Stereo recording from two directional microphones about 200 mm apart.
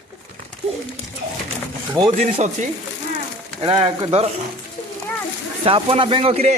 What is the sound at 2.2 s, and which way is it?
Speech, 35° right (ahead or behind).